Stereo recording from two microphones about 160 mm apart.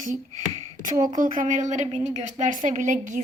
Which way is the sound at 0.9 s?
25° right (ahead or behind).